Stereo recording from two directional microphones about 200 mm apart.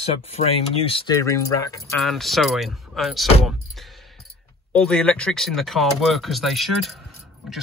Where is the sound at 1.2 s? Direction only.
15° left (ahead or behind).